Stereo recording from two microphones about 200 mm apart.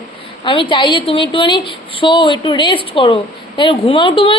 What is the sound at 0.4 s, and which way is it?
A woman's voice, 25° left (ahead or behind).